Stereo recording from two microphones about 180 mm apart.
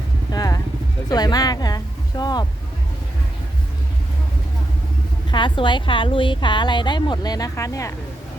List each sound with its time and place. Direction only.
0.3 s vehicle: 20° left (ahead or behind)
1.1 s speech: 20° left (ahead or behind)
5.3 s a woman's voice: 25° left (ahead or behind)